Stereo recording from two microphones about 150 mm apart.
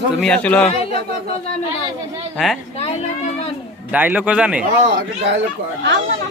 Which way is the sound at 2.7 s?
45° left (ahead or behind).